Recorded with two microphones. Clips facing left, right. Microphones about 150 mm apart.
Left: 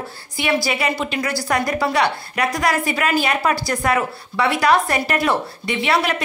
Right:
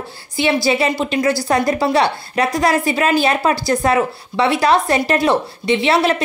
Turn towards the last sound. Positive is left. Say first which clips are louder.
# right 5 dB
turn(degrees=-25)  # may be behind; listen again after turning